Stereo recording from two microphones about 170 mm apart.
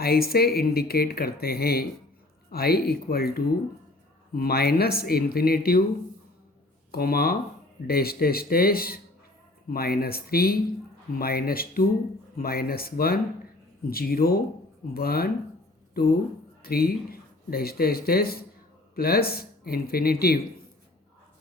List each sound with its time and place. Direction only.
0.0 s speech: 65° left (ahead or behind)
6.9 s speech: 65° left (ahead or behind)